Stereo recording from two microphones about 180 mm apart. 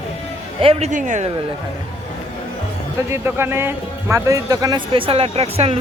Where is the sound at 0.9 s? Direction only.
45° right (ahead or behind).